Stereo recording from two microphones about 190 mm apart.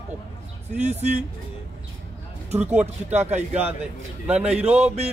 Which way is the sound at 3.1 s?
35° right (ahead or behind).